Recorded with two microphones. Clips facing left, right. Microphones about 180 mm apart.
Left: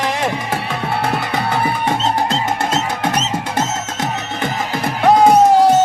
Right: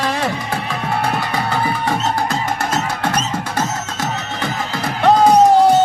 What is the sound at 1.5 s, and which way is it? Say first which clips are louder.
Music: left 1 dB; 20° left (ahead or behind).